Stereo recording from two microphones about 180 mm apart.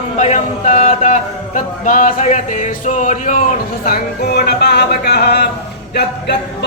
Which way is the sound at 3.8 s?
60° left (ahead or behind).